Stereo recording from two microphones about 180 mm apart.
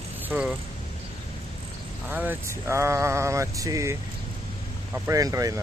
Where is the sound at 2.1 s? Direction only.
10° right (ahead or behind).